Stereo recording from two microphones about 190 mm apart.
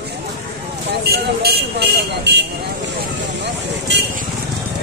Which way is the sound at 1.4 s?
55° right (ahead or behind).